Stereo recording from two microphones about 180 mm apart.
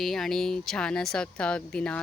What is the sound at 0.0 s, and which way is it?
Speech, centre (ahead or behind).